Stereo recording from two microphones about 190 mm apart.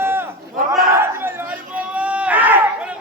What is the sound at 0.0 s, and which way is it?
Crowd, 10° right (ahead or behind).